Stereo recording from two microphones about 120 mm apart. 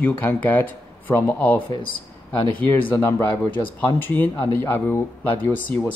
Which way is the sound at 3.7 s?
15° left (ahead or behind).